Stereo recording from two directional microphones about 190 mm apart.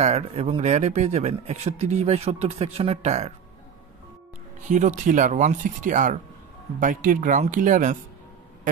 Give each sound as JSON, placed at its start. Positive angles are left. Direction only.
{"t": 0.0, "sound": "speech", "side_deg": -35}
{"t": 4.6, "sound": "speech", "side_deg": -40}